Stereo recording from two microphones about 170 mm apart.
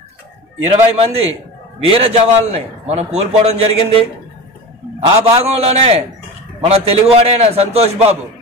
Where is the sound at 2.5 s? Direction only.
40° right (ahead or behind).